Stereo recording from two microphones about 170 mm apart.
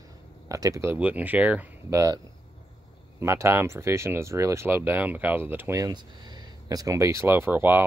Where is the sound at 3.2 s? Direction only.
15° right (ahead or behind).